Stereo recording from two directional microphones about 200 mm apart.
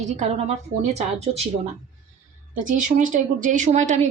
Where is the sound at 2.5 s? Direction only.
40° right (ahead or behind).